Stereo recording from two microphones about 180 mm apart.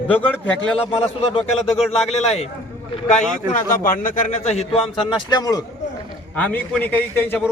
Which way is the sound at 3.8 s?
50° left (ahead or behind).